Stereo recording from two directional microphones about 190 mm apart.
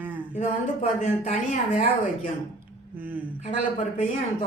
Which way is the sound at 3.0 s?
10° right (ahead or behind).